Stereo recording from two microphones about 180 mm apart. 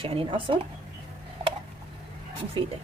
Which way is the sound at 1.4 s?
30° right (ahead or behind).